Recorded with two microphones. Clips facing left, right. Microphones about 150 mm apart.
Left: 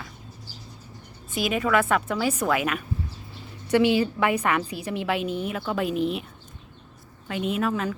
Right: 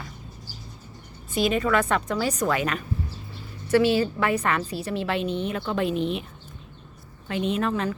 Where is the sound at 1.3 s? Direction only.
5° left (ahead or behind).